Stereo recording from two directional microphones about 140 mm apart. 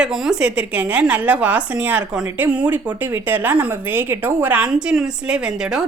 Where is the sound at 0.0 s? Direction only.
5° right (ahead or behind).